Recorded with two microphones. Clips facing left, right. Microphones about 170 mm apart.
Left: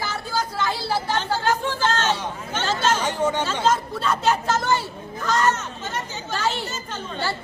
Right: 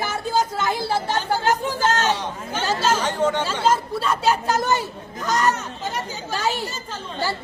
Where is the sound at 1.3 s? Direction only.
15° right (ahead or behind).